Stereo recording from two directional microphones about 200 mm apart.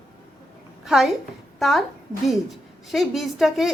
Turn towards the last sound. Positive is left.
turn(degrees=0)  # may be behind; listen again after turning